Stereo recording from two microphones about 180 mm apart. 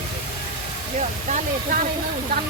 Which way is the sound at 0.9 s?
40° right (ahead or behind).